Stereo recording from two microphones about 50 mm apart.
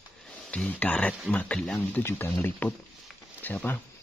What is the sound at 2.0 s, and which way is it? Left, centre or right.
Speech, left.